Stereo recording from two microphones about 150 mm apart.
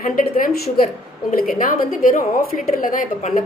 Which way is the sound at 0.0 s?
65° left (ahead or behind).